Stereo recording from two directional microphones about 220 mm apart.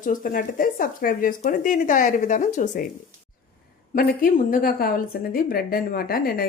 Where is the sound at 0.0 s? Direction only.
35° left (ahead or behind).